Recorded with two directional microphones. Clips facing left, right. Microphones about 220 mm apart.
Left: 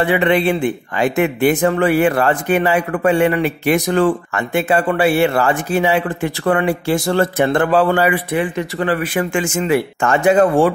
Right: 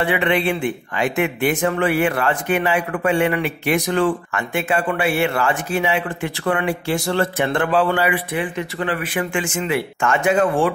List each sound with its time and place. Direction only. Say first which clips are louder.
0.0 s speech: left 4 dB; 35° left (ahead or behind)